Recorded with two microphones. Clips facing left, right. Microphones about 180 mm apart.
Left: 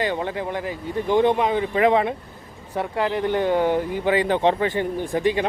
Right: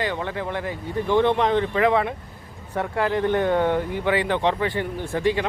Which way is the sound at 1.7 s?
20° left (ahead or behind).